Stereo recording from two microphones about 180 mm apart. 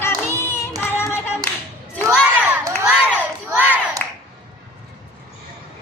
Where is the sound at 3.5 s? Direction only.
5° right (ahead or behind).